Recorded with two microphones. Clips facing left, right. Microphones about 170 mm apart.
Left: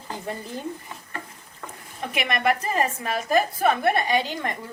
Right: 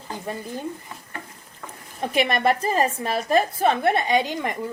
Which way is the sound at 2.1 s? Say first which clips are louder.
Right 3 dB; 35° right (ahead or behind).